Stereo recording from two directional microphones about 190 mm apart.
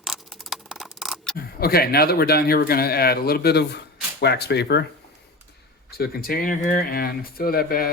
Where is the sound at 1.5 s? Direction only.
55° left (ahead or behind).